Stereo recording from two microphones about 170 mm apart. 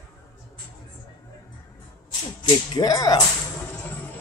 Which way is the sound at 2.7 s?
25° left (ahead or behind).